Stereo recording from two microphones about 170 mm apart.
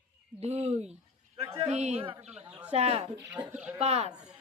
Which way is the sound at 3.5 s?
5° right (ahead or behind).